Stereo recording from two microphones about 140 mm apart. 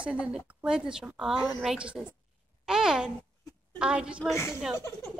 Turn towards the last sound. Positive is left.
turn(degrees=20)  # may be behind; listen again after turning